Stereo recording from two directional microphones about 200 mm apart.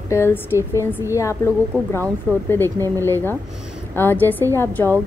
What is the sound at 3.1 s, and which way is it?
A woman's voice, 10° left (ahead or behind).